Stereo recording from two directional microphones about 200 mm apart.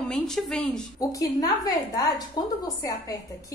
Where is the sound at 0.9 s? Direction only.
15° left (ahead or behind).